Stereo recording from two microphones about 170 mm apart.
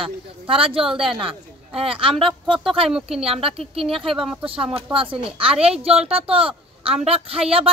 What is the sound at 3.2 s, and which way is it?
Speech, 35° right (ahead or behind).